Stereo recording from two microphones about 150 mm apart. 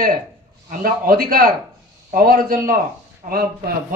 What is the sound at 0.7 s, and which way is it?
A man's voice, 70° right (ahead or behind).